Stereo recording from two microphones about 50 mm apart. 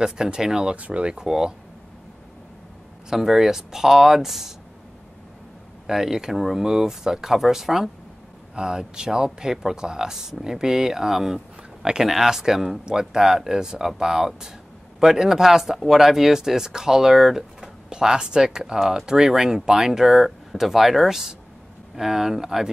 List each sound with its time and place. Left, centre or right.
0.0 s speech: centre
0.7 s speech: right
3.1 s speech: centre
5.9 s speech: centre
11.8 s speech: centre